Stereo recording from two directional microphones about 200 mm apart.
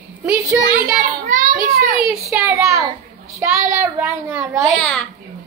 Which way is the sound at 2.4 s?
15° right (ahead or behind).